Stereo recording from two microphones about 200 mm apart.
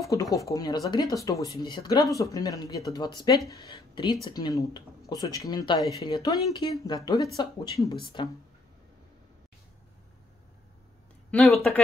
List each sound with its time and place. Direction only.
0.0 s speech: 15° left (ahead or behind)
11.2 s speech: 5° left (ahead or behind)